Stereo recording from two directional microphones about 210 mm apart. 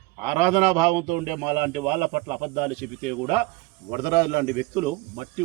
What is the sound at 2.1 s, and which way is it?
Speech, 35° right (ahead or behind).